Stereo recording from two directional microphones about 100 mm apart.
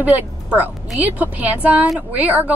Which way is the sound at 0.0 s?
15° right (ahead or behind).